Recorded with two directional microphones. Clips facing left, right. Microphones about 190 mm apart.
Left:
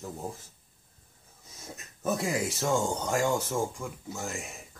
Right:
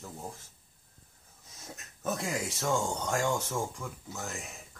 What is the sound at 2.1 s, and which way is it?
Speech, centre (ahead or behind).